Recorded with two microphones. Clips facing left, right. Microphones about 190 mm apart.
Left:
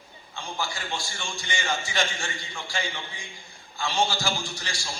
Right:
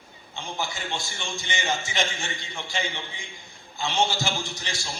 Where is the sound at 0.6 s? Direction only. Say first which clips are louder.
Right 1 dB; 20° right (ahead or behind).